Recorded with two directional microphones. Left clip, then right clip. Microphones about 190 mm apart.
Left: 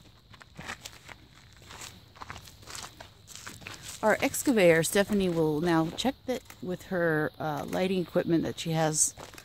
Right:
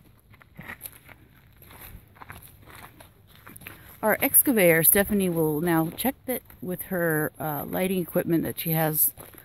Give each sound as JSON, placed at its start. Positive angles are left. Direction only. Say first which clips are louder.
{"t": 0.4, "sound": "walk", "louder": "even", "side_deg": -15}
{"t": 1.7, "sound": "walk", "louder": "left 4 dB", "side_deg": -30}
{"t": 3.6, "sound": "speech", "louder": "right 1 dB", "side_deg": -10}